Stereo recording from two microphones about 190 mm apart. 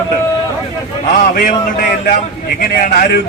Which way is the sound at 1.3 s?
45° left (ahead or behind).